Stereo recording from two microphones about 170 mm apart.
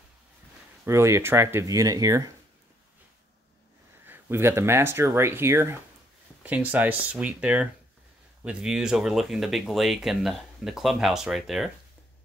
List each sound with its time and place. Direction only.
0.8 s speech: 15° right (ahead or behind)
4.0 s speech: 15° right (ahead or behind)